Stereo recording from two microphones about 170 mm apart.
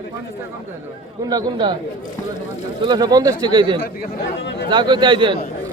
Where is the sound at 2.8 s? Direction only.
25° right (ahead or behind).